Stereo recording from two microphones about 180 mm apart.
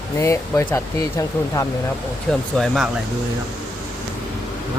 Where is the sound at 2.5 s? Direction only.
Centre (ahead or behind).